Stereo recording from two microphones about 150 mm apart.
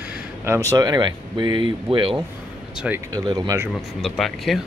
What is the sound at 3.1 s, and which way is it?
Speech, 25° right (ahead or behind).